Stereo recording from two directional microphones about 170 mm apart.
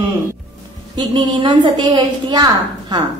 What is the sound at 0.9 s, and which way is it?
A woman's voice, 25° right (ahead or behind).